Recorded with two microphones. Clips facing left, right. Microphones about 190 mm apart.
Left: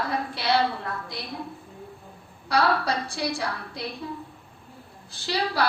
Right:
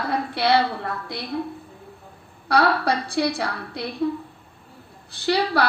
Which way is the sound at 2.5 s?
60° right (ahead or behind).